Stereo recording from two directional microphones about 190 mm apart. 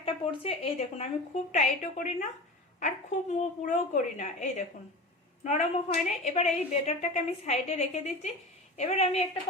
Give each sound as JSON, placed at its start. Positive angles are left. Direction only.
{"t": 0.0, "sound": "a woman's voice", "side_deg": 30}